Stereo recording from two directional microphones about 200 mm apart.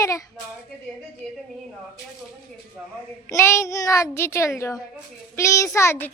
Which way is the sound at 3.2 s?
15° left (ahead or behind).